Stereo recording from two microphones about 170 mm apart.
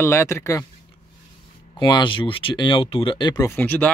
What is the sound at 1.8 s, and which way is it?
Speech, 30° left (ahead or behind).